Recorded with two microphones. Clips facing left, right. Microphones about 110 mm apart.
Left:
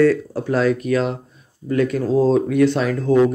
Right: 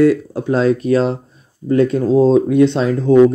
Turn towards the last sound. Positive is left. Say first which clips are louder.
# right 4 dB
turn(degrees=-25)  # may be behind; listen again after turning